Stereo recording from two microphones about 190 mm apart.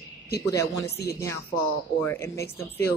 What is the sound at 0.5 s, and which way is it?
Speech, 15° left (ahead or behind).